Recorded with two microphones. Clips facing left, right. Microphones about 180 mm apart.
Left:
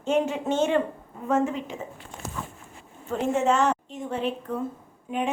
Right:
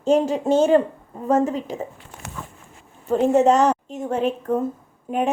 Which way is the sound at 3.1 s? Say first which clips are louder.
Right 7 dB; 40° right (ahead or behind).